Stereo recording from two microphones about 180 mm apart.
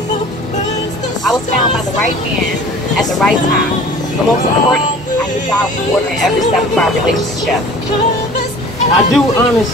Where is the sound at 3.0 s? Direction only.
Centre (ahead or behind).